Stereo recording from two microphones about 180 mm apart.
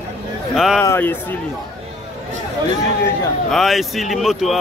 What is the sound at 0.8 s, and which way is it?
Speech, 15° left (ahead or behind).